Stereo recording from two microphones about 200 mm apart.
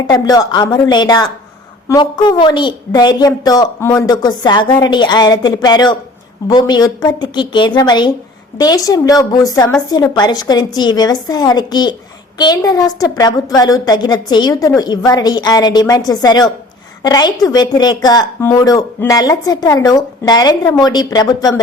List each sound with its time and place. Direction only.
0.1 s a woman's voice: 20° left (ahead or behind)